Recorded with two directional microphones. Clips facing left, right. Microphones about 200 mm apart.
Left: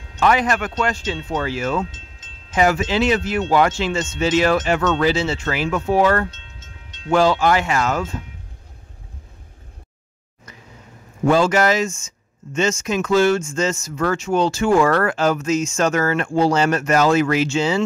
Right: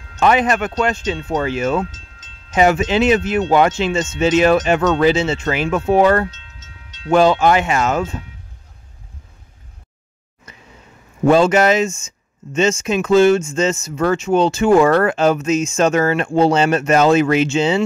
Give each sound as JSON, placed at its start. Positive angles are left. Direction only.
{"t": 0.2, "sound": "speech", "side_deg": -20}
{"t": 11.2, "sound": "speech", "side_deg": -20}